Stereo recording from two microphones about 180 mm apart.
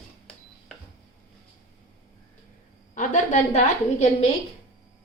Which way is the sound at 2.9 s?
45° left (ahead or behind).